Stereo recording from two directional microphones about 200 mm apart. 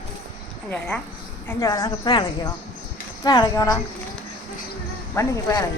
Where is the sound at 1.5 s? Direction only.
15° left (ahead or behind).